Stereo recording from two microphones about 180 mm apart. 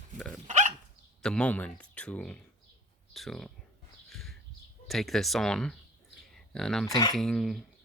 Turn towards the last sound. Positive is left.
turn(degrees=0)  # may be behind; listen again after turning